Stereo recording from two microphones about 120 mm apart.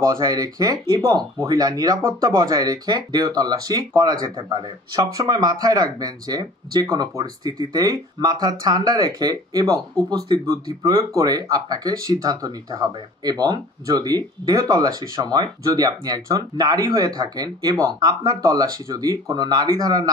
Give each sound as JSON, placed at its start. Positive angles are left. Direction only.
{"t": 0.0, "sound": "speech", "side_deg": -25}